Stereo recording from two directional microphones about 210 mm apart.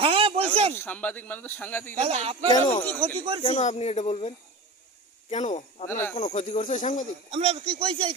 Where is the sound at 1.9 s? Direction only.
30° right (ahead or behind).